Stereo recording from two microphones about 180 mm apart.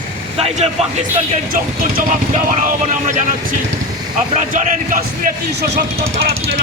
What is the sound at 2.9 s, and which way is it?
Speech, 45° right (ahead or behind).